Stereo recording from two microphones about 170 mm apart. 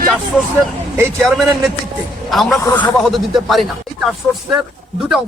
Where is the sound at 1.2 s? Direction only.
Centre (ahead or behind).